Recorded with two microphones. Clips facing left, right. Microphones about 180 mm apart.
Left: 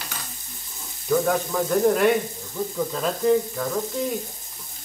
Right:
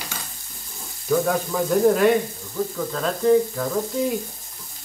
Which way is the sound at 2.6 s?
20° left (ahead or behind).